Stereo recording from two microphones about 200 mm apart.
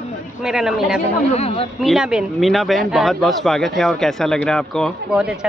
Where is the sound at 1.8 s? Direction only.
5° right (ahead or behind).